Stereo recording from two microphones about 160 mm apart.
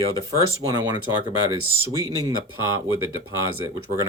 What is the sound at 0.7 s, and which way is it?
Speech, 25° right (ahead or behind).